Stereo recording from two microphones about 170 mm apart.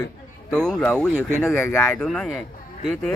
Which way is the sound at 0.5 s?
5° left (ahead or behind).